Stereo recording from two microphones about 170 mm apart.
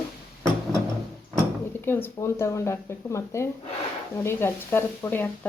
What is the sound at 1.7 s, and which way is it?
Speech, 10° left (ahead or behind).